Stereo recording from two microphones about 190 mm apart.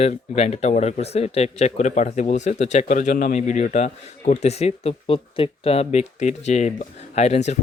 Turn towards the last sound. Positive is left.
turn(degrees=35)  # may be behind; listen again after turning